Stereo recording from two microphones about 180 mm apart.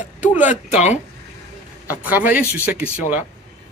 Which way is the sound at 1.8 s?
10° right (ahead or behind).